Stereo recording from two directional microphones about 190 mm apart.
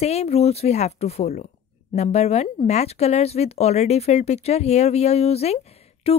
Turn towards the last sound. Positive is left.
turn(degrees=35)  # may be behind; listen again after turning